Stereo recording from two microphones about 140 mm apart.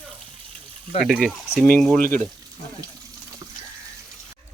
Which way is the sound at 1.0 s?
Centre (ahead or behind).